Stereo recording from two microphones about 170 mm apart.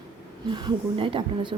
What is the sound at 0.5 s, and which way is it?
Speech, 30° right (ahead or behind).